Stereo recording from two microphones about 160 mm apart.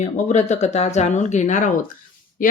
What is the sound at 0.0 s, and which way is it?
Speech, 45° left (ahead or behind).